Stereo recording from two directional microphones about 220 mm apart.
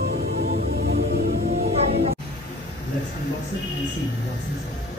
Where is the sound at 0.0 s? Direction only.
45° right (ahead or behind).